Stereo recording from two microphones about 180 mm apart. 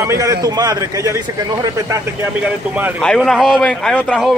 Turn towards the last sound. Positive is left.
turn(degrees=5)  # may be behind; listen again after turning